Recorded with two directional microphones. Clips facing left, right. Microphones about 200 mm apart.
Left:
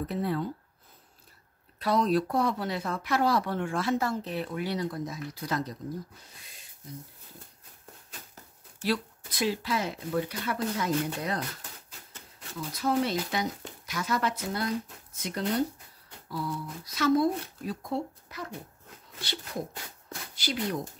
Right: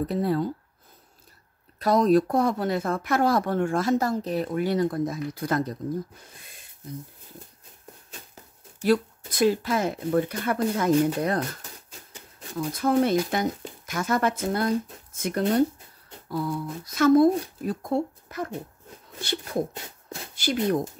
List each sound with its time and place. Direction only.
0.0 s speech: 35° right (ahead or behind)
1.8 s speech: 45° right (ahead or behind)
6.4 s a sound: 55° right (ahead or behind)
9.3 s speech: 50° right (ahead or behind)
12.5 s speech: 50° right (ahead or behind)
19.7 s rub: 25° right (ahead or behind)
20.3 s speech: 50° right (ahead or behind)